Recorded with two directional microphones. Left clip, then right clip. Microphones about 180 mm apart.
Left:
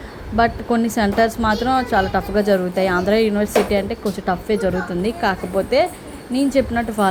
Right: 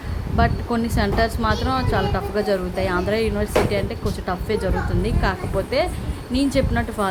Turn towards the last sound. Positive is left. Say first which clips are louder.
# left 4 dB
turn(degrees=15)  # may be behind; listen again after turning